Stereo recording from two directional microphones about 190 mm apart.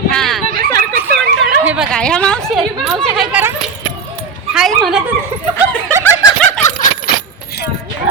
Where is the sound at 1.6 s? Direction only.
10° right (ahead or behind).